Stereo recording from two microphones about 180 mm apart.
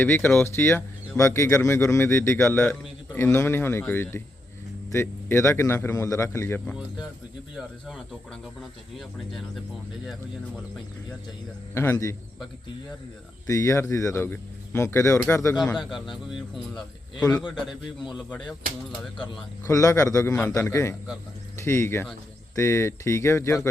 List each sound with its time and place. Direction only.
0.0 s speech: 10° left (ahead or behind)
7.5 s speech: centre (ahead or behind)
11.7 s speech: 15° left (ahead or behind)
13.5 s speech: 15° left (ahead or behind)
15.6 s speech: centre (ahead or behind)
19.1 s speech: 25° left (ahead or behind)